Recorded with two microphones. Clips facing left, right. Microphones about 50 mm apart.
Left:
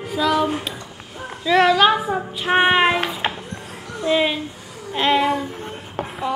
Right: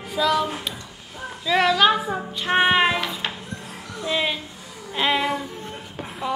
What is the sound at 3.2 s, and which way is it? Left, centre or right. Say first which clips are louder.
Music: left 5 dB; left.